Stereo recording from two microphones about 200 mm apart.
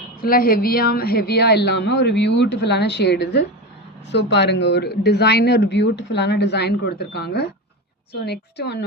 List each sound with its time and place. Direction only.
0.2 s speech: 45° left (ahead or behind)